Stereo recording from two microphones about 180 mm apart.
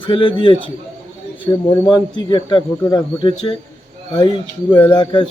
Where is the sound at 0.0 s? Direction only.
30° left (ahead or behind).